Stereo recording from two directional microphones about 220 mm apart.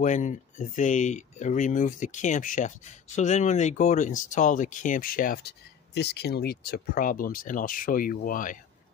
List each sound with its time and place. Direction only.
0.0 s speech: 35° left (ahead or behind)